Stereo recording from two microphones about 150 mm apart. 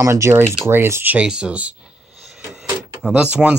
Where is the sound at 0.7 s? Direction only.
15° right (ahead or behind).